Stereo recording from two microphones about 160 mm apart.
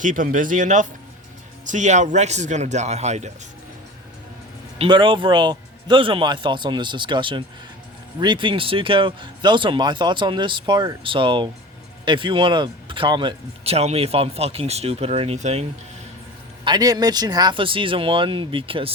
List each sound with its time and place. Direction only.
0.0 s speech: 55° right (ahead or behind)
4.8 s speech: 30° right (ahead or behind)
16.6 s speech: 25° right (ahead or behind)